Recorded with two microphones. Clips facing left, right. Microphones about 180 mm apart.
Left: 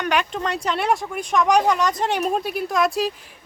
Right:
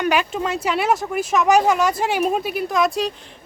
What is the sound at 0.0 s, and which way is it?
Speech, 5° right (ahead or behind).